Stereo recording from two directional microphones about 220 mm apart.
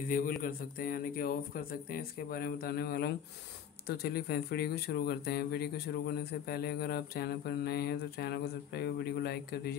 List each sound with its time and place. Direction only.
0.4 s speech: 40° left (ahead or behind)